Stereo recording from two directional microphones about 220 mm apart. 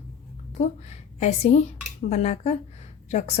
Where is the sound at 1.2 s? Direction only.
30° left (ahead or behind).